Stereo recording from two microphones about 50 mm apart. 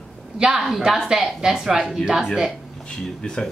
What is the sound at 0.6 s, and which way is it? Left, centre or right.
A woman's voice, centre.